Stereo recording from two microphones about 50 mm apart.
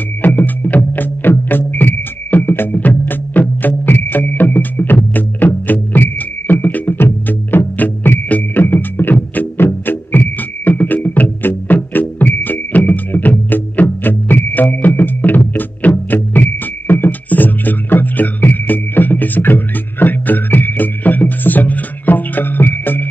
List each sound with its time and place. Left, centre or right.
0.2 s music: left